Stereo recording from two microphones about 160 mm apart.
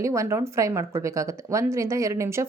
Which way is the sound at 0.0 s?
20° right (ahead or behind).